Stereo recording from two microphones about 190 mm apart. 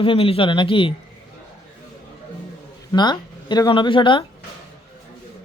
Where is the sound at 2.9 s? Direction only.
20° left (ahead or behind).